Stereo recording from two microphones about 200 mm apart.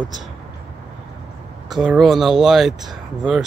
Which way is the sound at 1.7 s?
Centre (ahead or behind).